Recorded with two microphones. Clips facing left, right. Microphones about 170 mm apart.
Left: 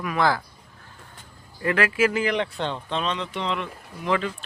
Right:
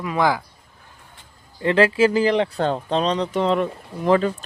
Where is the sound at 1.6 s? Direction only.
30° right (ahead or behind).